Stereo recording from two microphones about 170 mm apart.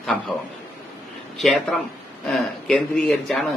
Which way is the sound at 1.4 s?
Centre (ahead or behind).